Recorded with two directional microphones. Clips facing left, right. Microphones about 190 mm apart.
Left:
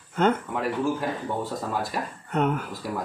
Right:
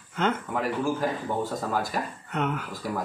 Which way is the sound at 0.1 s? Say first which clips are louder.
Left 4 dB; 40° left (ahead or behind).